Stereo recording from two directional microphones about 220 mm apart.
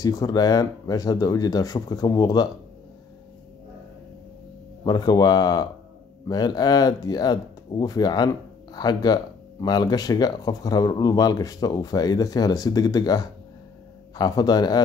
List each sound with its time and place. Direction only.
0.0 s speech: 15° left (ahead or behind)
4.8 s speech: 15° left (ahead or behind)